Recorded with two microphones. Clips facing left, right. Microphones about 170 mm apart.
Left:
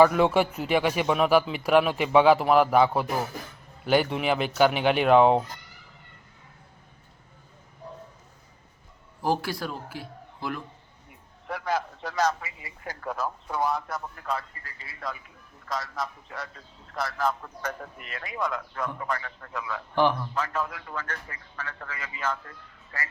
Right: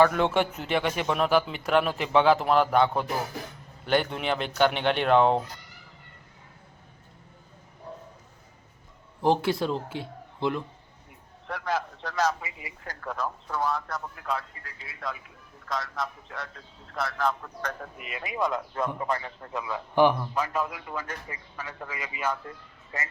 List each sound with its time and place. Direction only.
0.0 s speech: 5° left (ahead or behind)
9.2 s a man's voice: 20° right (ahead or behind)
11.4 s a man's voice: 5° left (ahead or behind)
12.4 s a man's voice: 20° right (ahead or behind)
12.8 s speech: 10° left (ahead or behind)
14.2 s a man's voice: centre (ahead or behind)
17.9 s a man's voice: 5° right (ahead or behind)
18.2 s a man's voice: 20° right (ahead or behind)